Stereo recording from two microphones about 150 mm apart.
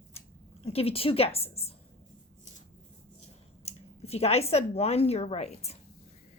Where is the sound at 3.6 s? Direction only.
45° left (ahead or behind).